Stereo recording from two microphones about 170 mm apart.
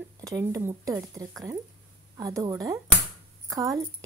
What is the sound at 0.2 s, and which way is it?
Speech, 20° right (ahead or behind).